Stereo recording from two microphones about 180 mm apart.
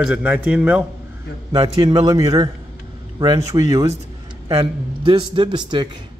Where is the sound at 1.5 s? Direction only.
25° right (ahead or behind).